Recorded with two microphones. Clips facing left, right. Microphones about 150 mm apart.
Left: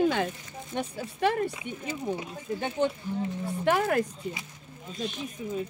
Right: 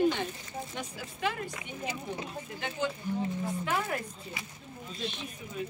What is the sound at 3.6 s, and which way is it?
Speech, 65° left (ahead or behind).